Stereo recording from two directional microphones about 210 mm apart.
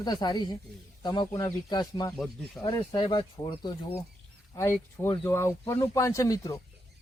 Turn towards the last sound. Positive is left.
turn(degrees=15)  # may be behind; listen again after turning